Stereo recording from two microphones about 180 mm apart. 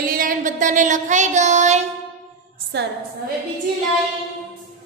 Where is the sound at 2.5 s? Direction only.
65° right (ahead or behind).